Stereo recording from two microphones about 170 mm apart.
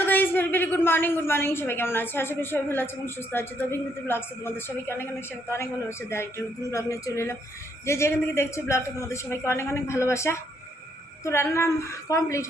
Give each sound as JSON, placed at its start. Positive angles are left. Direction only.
{"t": 0.0, "sound": "a woman's voice", "side_deg": 10}